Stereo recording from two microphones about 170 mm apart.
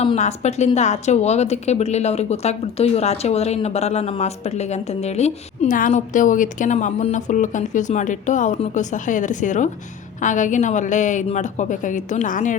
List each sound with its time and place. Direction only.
0.0 s a woman's voice: 35° left (ahead or behind)